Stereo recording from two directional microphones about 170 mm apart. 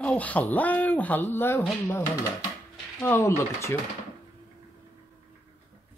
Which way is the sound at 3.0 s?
10° left (ahead or behind).